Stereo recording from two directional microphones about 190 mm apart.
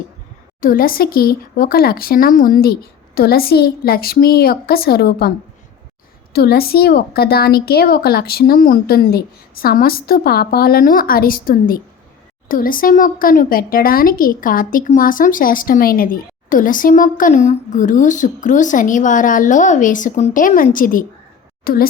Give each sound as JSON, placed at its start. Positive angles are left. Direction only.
{"t": 0.6, "sound": "a woman's voice", "side_deg": 50}
{"t": 6.3, "sound": "a woman's voice", "side_deg": 55}